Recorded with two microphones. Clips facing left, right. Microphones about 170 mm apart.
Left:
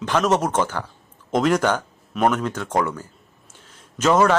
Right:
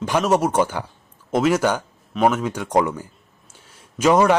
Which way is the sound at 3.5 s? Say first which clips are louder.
Even; 10° right (ahead or behind).